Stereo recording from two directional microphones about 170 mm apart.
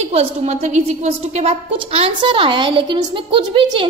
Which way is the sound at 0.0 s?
35° right (ahead or behind).